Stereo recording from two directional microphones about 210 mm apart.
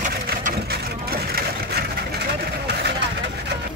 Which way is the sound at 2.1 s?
55° right (ahead or behind).